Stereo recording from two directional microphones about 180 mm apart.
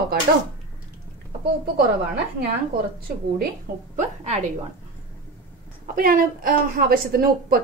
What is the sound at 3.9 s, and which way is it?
Speech, 40° right (ahead or behind).